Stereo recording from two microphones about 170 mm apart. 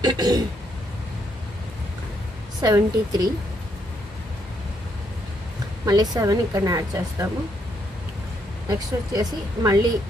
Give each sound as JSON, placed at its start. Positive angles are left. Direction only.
{"t": 0.0, "sound": "a woman's voice", "side_deg": -25}
{"t": 2.6, "sound": "a woman's voice", "side_deg": -20}
{"t": 5.9, "sound": "a woman's voice", "side_deg": -20}
{"t": 8.6, "sound": "a woman's voice", "side_deg": -25}